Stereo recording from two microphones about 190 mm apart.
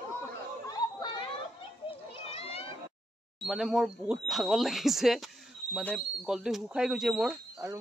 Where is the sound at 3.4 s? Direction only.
Centre (ahead or behind).